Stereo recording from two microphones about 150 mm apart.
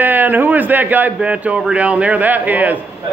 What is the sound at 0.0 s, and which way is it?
A man's voice, 10° right (ahead or behind).